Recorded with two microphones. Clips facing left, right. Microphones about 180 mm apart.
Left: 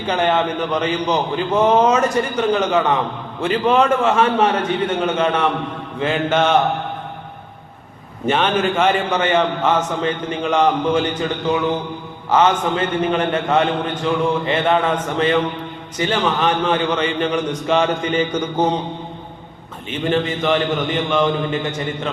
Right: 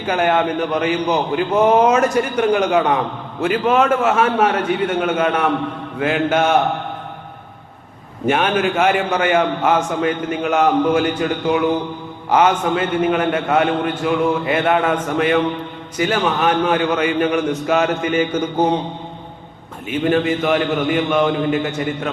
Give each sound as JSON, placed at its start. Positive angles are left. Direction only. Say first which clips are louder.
{"t": 0.0, "sound": "a man's voice", "louder": "right 1 dB", "side_deg": -10}
{"t": 8.3, "sound": "a man's voice", "louder": "right 1 dB", "side_deg": -10}
{"t": 19.9, "sound": "a man's voice", "louder": "right 3 dB", "side_deg": -10}